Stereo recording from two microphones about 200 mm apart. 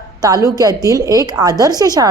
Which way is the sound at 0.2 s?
20° right (ahead or behind).